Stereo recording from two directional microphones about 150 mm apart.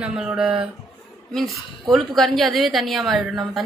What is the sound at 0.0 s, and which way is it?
A woman's voice, 5° right (ahead or behind).